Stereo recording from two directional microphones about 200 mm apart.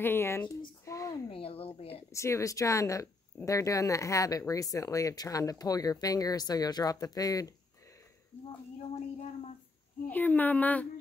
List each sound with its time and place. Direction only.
0.0 s speech: 10° left (ahead or behind)
0.8 s a sound: 15° left (ahead or behind)
1.3 s speech: 30° left (ahead or behind)
2.0 s speech: 15° left (ahead or behind)
10.0 s speech: 10° left (ahead or behind)